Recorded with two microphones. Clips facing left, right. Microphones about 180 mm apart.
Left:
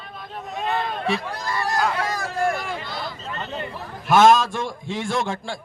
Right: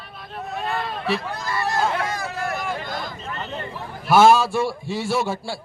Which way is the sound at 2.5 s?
45° right (ahead or behind).